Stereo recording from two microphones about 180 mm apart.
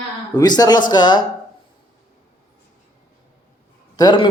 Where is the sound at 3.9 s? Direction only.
25° left (ahead or behind).